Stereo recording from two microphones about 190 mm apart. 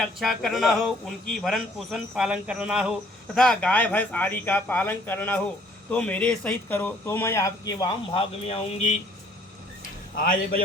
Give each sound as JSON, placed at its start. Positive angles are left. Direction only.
{"t": 0.0, "sound": "a man's voice", "side_deg": 0}
{"t": 10.2, "sound": "a man's voice", "side_deg": 50}